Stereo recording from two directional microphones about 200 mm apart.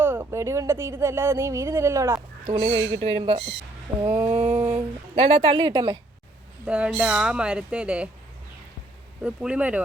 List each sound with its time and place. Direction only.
0.0 s speech: 10° right (ahead or behind); by 3.4 s 30° right (ahead or behind)
4.0 s speech: 10° right (ahead or behind)
4.4 s a sound: 10° right (ahead or behind)
5.1 s speech: 30° right (ahead or behind)
6.7 s speech: 5° right (ahead or behind)
9.2 s speech: 5° right (ahead or behind)